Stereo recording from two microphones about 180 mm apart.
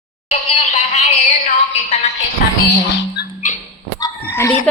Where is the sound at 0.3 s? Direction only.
45° left (ahead or behind).